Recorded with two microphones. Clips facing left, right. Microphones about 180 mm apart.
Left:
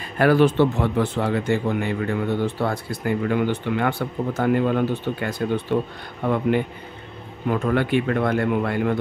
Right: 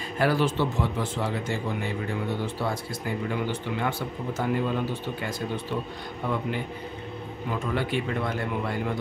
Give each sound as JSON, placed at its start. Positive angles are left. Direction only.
{"t": 0.2, "sound": "speech", "side_deg": 60}
{"t": 7.4, "sound": "speech", "side_deg": 55}